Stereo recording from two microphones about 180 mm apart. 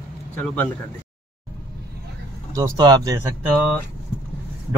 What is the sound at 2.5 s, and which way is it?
Speech, 20° right (ahead or behind).